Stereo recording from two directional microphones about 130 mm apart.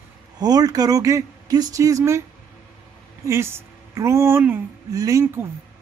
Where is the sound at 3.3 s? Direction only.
20° right (ahead or behind).